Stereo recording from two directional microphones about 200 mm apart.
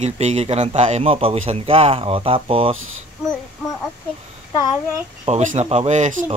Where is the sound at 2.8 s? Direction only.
90° right.